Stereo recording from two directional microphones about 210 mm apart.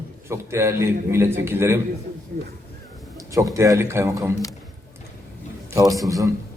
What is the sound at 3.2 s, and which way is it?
A man's voice, 15° right (ahead or behind).